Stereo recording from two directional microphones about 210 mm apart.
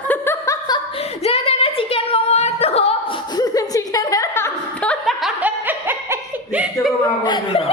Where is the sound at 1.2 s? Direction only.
25° left (ahead or behind).